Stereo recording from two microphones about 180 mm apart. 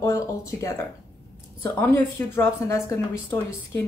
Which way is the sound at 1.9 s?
15° left (ahead or behind).